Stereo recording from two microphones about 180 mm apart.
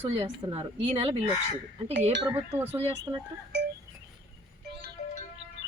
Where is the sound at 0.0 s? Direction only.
35° right (ahead or behind).